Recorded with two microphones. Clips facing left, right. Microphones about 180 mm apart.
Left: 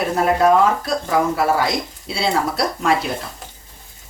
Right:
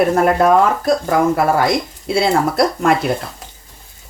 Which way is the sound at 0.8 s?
50° right (ahead or behind).